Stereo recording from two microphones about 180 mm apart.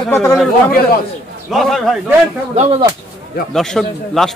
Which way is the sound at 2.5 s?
35° right (ahead or behind).